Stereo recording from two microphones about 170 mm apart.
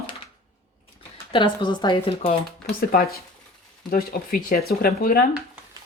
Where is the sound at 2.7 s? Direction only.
60° left (ahead or behind).